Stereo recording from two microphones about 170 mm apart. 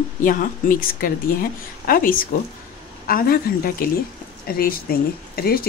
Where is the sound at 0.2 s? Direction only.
55° left (ahead or behind).